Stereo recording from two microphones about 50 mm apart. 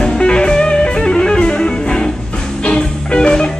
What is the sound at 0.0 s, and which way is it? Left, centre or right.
Music, centre.